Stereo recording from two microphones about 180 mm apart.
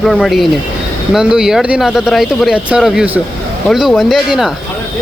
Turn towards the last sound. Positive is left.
turn(degrees=0)  # may be behind; listen again after turning